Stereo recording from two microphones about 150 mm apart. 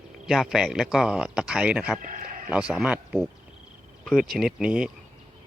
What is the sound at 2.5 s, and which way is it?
Speech, 5° right (ahead or behind).